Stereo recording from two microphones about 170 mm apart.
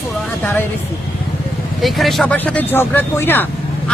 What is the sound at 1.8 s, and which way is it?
Speech, centre (ahead or behind).